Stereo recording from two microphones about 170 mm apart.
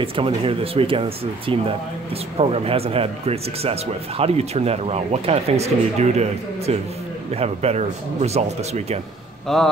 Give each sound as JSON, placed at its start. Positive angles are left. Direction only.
{"t": 0.0, "sound": "speech", "side_deg": -35}
{"t": 9.5, "sound": "a man's voice", "side_deg": 0}